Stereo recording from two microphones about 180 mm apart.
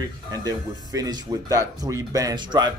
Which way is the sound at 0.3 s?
20° right (ahead or behind).